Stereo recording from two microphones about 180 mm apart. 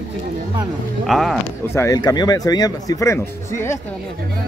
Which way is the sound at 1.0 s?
Centre (ahead or behind).